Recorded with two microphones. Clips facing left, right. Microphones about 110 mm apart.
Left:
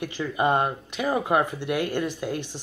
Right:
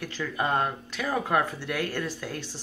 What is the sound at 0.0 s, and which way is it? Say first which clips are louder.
Speech: left 5 dB; 20° left (ahead or behind).